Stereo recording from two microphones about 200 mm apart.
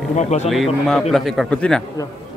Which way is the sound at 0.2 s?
35° left (ahead or behind).